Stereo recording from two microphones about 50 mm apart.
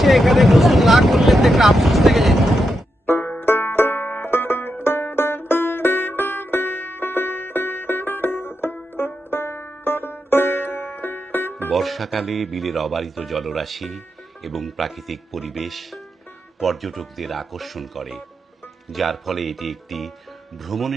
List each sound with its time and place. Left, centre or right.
0.0 s speech: centre
3.4 s banjo: left
4.3 s music: left
11.7 s speech: centre